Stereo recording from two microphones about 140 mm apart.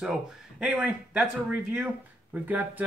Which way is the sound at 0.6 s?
10° right (ahead or behind).